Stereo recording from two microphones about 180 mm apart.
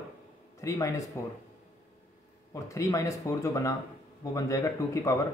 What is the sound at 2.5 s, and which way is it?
Speech, 20° left (ahead or behind).